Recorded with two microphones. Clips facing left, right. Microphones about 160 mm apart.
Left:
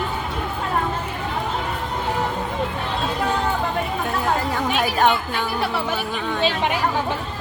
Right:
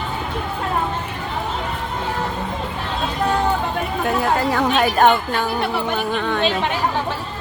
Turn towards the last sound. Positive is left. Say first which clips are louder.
# right 4 dB
turn(degrees=-65)  # may be behind; listen again after turning